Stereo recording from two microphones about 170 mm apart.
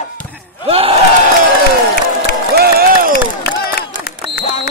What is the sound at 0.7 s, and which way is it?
Crowd, 35° right (ahead or behind).